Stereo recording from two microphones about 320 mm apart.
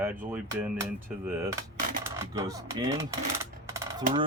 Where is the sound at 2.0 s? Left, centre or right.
Centre.